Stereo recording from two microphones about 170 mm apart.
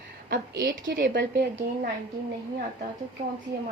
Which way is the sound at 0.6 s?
65° right (ahead or behind).